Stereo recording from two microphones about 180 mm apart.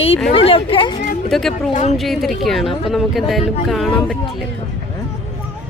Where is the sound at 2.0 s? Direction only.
Centre (ahead or behind).